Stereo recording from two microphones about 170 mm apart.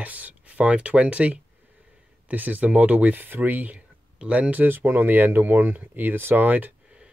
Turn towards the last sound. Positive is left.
turn(degrees=-10)  # may be behind; listen again after turning